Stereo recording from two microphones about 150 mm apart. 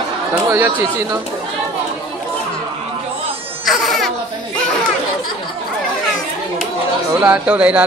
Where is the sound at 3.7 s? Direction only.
Centre (ahead or behind).